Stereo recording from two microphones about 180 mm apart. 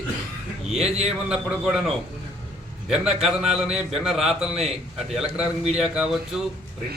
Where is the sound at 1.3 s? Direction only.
5° right (ahead or behind).